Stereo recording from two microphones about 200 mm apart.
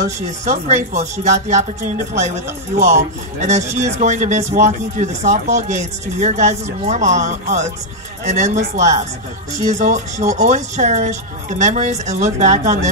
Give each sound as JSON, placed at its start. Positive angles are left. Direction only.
{"t": 0.5, "sound": "a woman's voice", "side_deg": -35}